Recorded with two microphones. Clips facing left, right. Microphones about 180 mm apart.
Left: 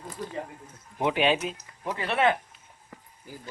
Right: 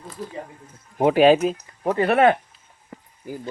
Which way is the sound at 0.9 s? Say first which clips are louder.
Right 10 dB; 40° right (ahead or behind).